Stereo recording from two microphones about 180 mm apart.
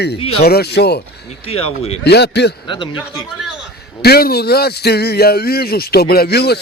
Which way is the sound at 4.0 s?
60° left (ahead or behind).